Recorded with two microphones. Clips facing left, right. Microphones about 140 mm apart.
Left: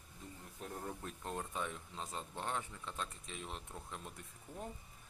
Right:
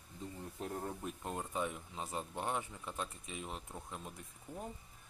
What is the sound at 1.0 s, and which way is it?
Speech, 5° right (ahead or behind).